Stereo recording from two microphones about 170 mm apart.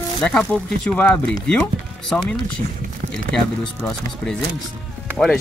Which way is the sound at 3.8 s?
5° left (ahead or behind).